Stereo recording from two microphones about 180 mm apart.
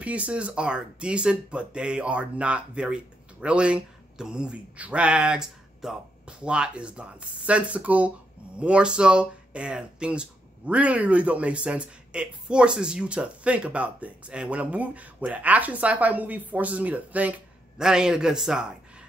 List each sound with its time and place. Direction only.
0.0 s speech: 5° right (ahead or behind)